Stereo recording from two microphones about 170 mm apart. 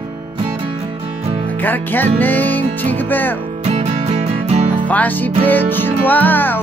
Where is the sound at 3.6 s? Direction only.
40° right (ahead or behind).